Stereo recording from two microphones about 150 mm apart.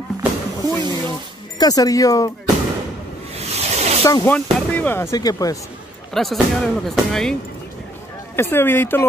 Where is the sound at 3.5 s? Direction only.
45° right (ahead or behind).